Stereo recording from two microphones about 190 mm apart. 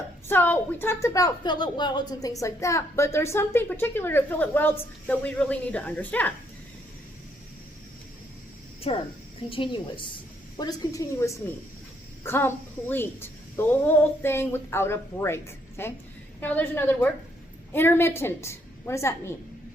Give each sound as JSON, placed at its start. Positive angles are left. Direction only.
{"t": 0.3, "sound": "a woman's voice", "side_deg": 10}
{"t": 8.9, "sound": "a woman's voice", "side_deg": 30}